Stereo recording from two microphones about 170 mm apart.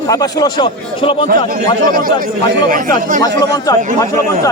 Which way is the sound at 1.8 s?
55° right (ahead or behind).